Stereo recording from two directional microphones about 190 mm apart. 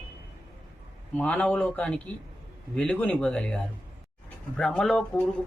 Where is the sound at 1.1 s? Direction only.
5° left (ahead or behind).